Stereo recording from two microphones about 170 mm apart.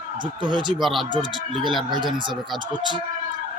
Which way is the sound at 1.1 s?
30° right (ahead or behind).